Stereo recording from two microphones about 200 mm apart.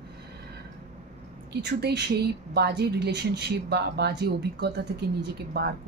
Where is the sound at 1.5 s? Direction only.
55° right (ahead or behind).